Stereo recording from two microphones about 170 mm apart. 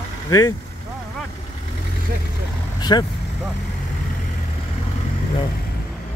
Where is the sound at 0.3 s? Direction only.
20° left (ahead or behind).